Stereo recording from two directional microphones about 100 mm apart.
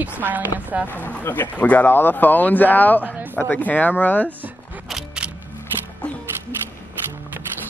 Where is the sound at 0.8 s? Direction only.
15° left (ahead or behind).